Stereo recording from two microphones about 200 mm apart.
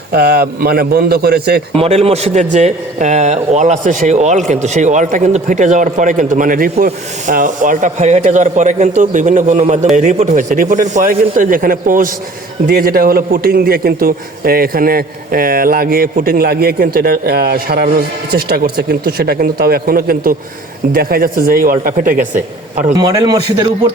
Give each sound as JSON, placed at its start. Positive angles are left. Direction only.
{"t": 0.1, "sound": "a man's voice", "side_deg": -50}
{"t": 1.8, "sound": "a man's voice", "side_deg": -30}
{"t": 22.9, "sound": "a man's voice", "side_deg": -20}